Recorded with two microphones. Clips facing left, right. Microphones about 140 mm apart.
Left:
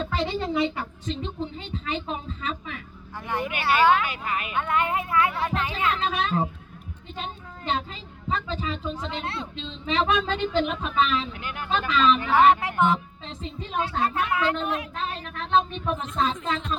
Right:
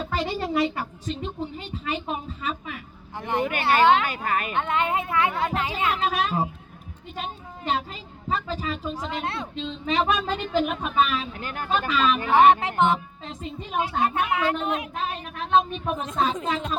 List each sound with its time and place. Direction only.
0.0 s a sound: 10° right (ahead or behind)
1.1 s a woman's voice: 10° right (ahead or behind)
3.2 s speech: 20° right (ahead or behind)
4.0 s speech: 45° right (ahead or behind)
4.5 s speech: 25° right (ahead or behind)
5.9 s a woman's voice: 10° right (ahead or behind)
7.2 s a sound: 10° right (ahead or behind)
8.4 s a woman's voice: 10° right (ahead or behind)
11.3 s speech: 40° right (ahead or behind)
11.7 s a woman's voice: 10° right (ahead or behind)
12.3 s speech: 25° right (ahead or behind)
13.2 s a woman's voice: 10° right (ahead or behind)